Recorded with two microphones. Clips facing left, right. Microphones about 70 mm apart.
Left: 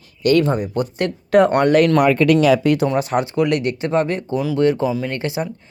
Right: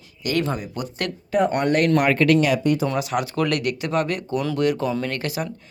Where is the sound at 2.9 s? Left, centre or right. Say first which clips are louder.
Left 5 dB; left.